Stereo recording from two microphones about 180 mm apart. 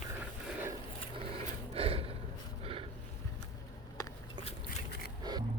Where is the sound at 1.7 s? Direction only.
30° right (ahead or behind).